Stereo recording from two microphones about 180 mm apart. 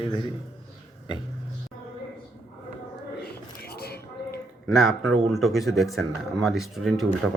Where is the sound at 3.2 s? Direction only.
60° left (ahead or behind).